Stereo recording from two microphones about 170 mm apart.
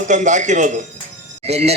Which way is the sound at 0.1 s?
45° right (ahead or behind).